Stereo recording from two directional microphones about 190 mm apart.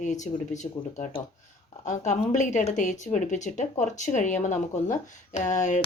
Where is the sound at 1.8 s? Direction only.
40° left (ahead or behind).